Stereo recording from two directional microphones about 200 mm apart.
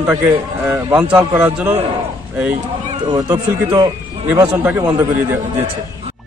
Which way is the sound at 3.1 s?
20° right (ahead or behind).